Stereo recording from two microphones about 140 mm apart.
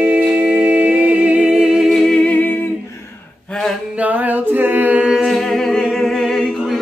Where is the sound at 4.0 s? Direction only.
10° right (ahead or behind).